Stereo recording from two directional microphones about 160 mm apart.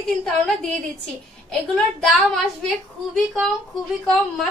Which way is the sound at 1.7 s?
Centre (ahead or behind).